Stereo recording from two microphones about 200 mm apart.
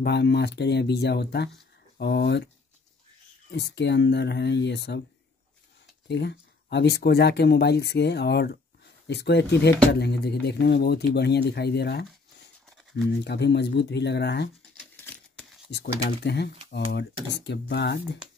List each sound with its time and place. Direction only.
0.0 s speech: 55° left (ahead or behind)
3.5 s speech: 60° left (ahead or behind)
6.0 s speech: 60° left (ahead or behind)
13.2 s speech: 60° left (ahead or behind)
15.7 s speech: 60° left (ahead or behind)